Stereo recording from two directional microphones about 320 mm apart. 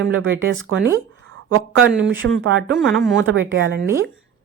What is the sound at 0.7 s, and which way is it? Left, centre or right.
Speech, right.